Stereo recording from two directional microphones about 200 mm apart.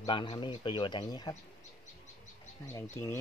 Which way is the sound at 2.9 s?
10° left (ahead or behind).